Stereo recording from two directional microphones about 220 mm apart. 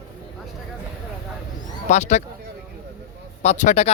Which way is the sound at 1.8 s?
30° left (ahead or behind).